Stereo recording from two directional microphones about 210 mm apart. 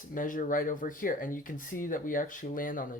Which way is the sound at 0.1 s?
40° left (ahead or behind).